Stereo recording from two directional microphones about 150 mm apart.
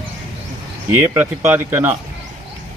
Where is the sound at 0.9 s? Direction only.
15° right (ahead or behind).